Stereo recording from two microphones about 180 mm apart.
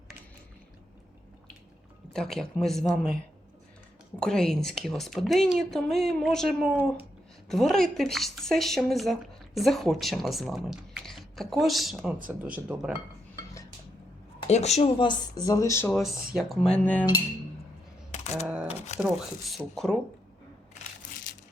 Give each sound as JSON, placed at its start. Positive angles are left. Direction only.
{"t": 2.1, "sound": "speech", "side_deg": 5}
{"t": 4.2, "sound": "speech", "side_deg": 5}
{"t": 14.4, "sound": "speech", "side_deg": 35}
{"t": 15.9, "sound": "speech", "side_deg": 0}
{"t": 16.7, "sound": "cutlery", "side_deg": 10}
{"t": 18.4, "sound": "speech", "side_deg": -5}